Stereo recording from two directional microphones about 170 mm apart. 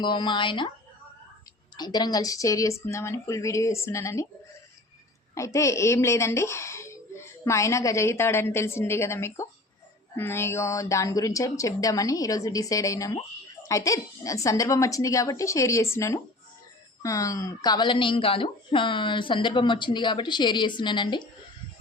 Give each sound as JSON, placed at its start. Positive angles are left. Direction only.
{"t": 0.0, "sound": "a woman's voice", "side_deg": 25}
{"t": 1.7, "sound": "a woman's voice", "side_deg": 25}
{"t": 5.3, "sound": "a woman's voice", "side_deg": 15}